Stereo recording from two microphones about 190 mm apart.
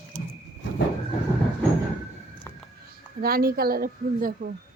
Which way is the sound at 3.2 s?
50° right (ahead or behind).